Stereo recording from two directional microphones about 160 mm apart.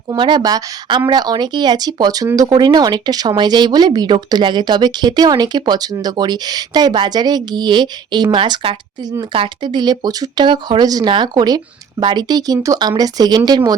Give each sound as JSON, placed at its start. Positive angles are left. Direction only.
{"t": 0.1, "sound": "speech", "side_deg": -30}